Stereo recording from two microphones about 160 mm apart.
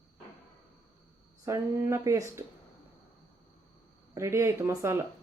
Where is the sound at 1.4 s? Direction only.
20° right (ahead or behind).